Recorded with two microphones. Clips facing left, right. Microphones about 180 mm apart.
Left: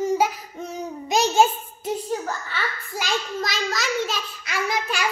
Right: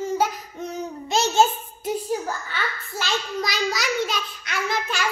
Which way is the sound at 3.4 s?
Centre (ahead or behind).